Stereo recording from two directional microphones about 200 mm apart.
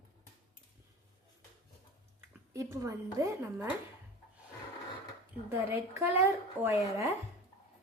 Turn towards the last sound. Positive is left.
turn(degrees=-10)  # may be behind; listen again after turning